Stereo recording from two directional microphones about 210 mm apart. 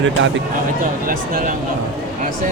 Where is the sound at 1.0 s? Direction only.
40° right (ahead or behind).